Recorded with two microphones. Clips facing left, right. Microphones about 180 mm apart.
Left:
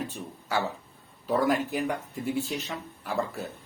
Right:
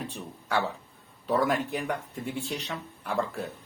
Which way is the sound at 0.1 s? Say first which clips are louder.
Right 1 dB; 5° left (ahead or behind).